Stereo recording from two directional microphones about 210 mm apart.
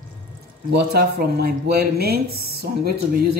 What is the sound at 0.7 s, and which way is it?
Speech, 50° right (ahead or behind).